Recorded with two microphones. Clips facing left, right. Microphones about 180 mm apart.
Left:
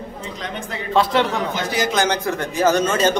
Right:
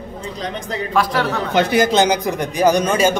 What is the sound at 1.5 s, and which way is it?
Speech, 55° right (ahead or behind).